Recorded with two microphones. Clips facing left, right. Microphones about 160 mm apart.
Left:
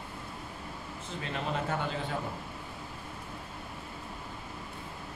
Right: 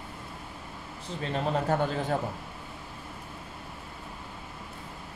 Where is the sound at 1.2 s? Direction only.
35° right (ahead or behind).